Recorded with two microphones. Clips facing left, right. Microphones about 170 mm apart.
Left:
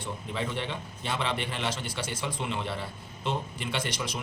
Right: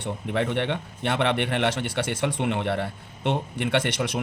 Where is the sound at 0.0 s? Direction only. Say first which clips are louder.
Right 7 dB; 65° right (ahead or behind).